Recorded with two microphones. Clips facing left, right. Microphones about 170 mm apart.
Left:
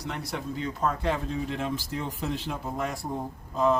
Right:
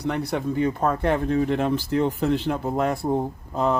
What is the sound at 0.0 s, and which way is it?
Speech, 60° right (ahead or behind).